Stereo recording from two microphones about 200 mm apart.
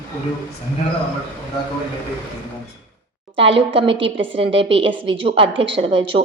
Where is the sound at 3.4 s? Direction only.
25° right (ahead or behind).